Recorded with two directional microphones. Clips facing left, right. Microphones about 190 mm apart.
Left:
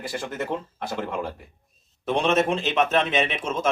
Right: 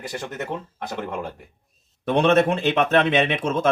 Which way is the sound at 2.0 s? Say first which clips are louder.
Right 4 dB; 60° right (ahead or behind).